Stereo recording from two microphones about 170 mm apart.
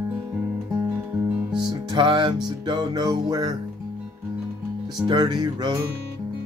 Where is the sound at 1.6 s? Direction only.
30° right (ahead or behind).